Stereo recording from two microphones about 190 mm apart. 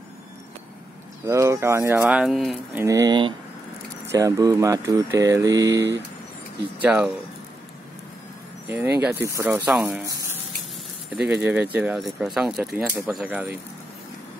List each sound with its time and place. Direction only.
1.2 s speech: 15° right (ahead or behind)
2.8 s speech: 15° right (ahead or behind)
6.8 s speech: 5° right (ahead or behind)
8.6 s speech: 10° right (ahead or behind)